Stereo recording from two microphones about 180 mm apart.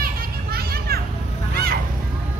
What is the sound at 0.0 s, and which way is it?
Children playing, 55° right (ahead or behind).